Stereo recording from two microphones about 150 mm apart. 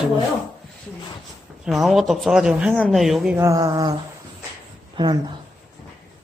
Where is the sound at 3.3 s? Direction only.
20° right (ahead or behind).